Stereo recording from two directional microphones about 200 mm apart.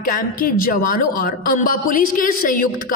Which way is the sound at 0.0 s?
45° left (ahead or behind).